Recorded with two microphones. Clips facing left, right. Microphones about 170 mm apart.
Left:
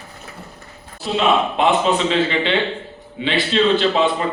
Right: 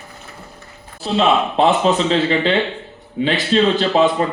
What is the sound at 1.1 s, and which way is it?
A man's voice, 35° right (ahead or behind).